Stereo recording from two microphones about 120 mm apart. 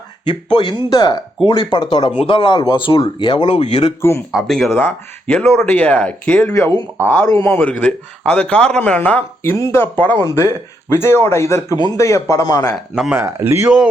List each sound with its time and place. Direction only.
0.5 s speech: 40° left (ahead or behind)
3.6 s speech: 70° left (ahead or behind)
4.3 s speech: centre (ahead or behind)
4.7 s a man's voice: 15° left (ahead or behind)
6.5 s a man's voice: 30° left (ahead or behind)
7.0 s a man's voice: 20° left (ahead or behind)
12.7 s speech: 5° right (ahead or behind)
13.1 s speech: 20° right (ahead or behind)